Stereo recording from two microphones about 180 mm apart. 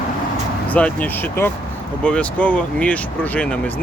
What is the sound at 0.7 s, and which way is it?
Speech, 10° left (ahead or behind).